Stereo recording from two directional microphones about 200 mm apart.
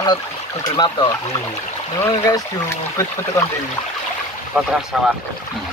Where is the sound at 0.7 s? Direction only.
20° left (ahead or behind).